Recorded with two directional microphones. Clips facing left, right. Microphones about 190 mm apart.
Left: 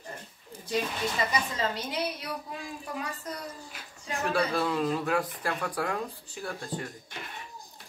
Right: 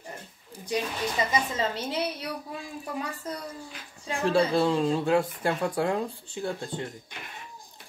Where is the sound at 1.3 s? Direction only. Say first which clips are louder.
Right 2 dB; 25° right (ahead or behind).